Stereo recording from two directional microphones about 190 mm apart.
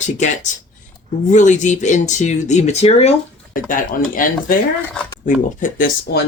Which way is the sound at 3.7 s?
45° left (ahead or behind).